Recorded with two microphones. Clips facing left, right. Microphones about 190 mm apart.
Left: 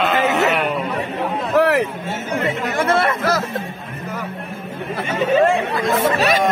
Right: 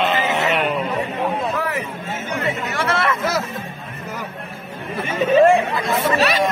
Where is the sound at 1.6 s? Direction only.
75° left (ahead or behind).